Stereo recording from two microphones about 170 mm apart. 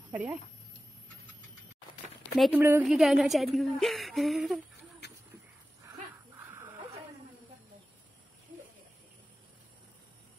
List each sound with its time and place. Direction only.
0.1 s speech: 10° right (ahead or behind)
2.5 s a woman's voice: 10° right (ahead or behind)
5.0 s a sound: 90° left
5.9 s dog: 15° right (ahead or behind)